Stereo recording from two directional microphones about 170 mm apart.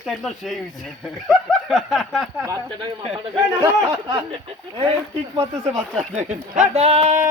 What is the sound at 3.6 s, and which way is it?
Speech, 20° right (ahead or behind).